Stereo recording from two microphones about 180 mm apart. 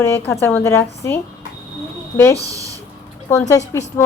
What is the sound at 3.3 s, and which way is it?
Speech, 20° left (ahead or behind).